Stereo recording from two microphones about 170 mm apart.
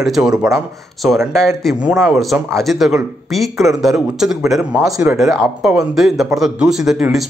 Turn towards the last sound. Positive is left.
turn(degrees=-5)  # may be behind; listen again after turning